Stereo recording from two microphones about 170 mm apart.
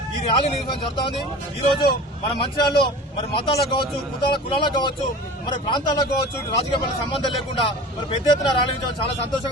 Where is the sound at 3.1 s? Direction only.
35° left (ahead or behind).